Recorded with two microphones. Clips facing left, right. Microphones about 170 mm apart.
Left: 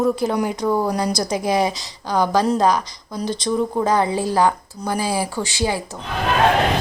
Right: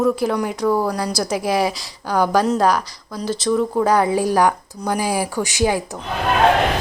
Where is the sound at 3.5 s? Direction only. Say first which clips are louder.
Right 3 dB; 20° left (ahead or behind).